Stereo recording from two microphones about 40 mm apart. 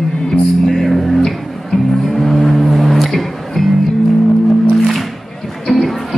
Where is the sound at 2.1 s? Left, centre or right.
Centre.